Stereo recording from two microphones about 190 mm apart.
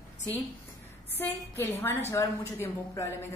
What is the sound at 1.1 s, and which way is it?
A woman's voice, 10° left (ahead or behind).